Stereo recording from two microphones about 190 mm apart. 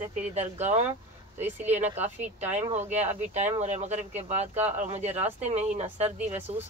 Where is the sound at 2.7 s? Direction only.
35° right (ahead or behind).